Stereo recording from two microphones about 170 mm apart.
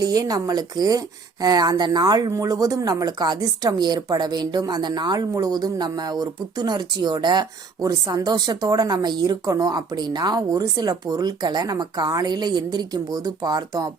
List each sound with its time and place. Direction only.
0.0 s speech: 20° right (ahead or behind)